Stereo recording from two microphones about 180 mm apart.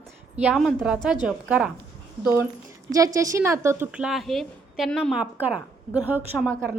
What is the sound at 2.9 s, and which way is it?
A woman's voice, 20° right (ahead or behind).